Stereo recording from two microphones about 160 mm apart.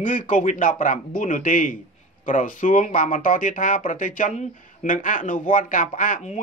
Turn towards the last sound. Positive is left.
turn(degrees=55)  # may be behind; listen again after turning